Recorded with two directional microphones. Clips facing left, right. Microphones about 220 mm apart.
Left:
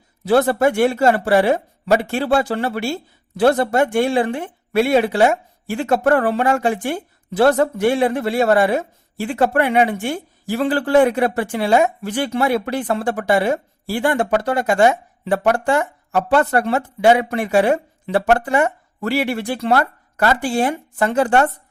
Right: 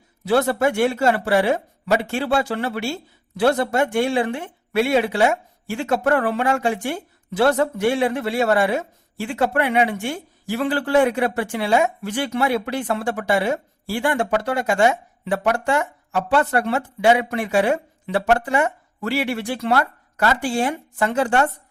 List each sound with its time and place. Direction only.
0.3 s speech: 45° left (ahead or behind)
1.5 s speech: 45° left (ahead or behind)
6.7 s speech: 35° left (ahead or behind)